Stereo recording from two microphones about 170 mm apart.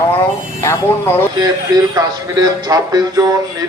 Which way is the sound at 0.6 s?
15° left (ahead or behind).